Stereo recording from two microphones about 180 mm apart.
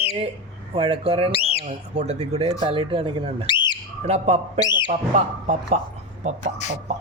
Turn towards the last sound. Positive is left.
turn(degrees=40)  # may be behind; listen again after turning